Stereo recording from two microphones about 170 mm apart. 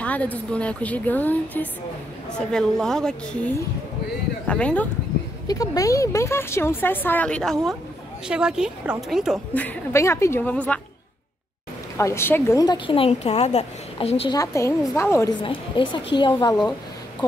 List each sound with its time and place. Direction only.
0.0 s a woman's voice: 10° left (ahead or behind)
5.5 s a woman's voice: 20° left (ahead or behind); by 9.4 s centre (ahead or behind)
9.5 s speech: 10° left (ahead or behind)
12.0 s a woman's voice: 15° left (ahead or behind); by 14.3 s 35° left (ahead or behind)
14.3 s a woman's voice: 20° left (ahead or behind)
15.4 s a woman's voice: 30° left (ahead or behind)